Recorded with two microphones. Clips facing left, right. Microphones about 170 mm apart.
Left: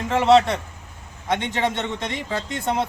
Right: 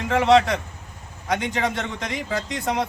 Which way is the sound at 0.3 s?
30° left (ahead or behind).